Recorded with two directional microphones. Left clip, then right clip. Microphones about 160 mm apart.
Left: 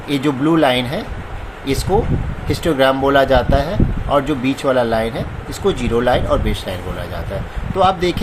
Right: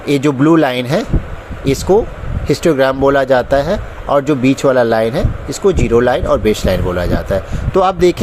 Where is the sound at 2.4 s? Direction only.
40° right (ahead or behind).